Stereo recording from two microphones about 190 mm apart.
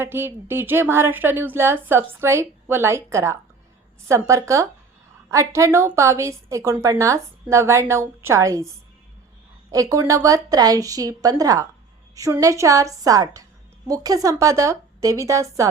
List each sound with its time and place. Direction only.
0.0 s a woman's voice: 10° right (ahead or behind)
9.7 s a woman's voice: 15° right (ahead or behind)